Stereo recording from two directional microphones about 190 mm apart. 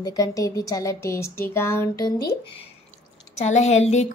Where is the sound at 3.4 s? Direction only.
35° left (ahead or behind).